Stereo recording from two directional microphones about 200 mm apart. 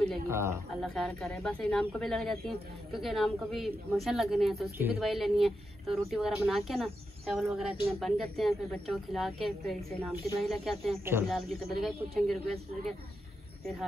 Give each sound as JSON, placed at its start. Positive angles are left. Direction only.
{"t": 0.3, "sound": "speech", "side_deg": -15}
{"t": 0.8, "sound": "speech", "side_deg": 0}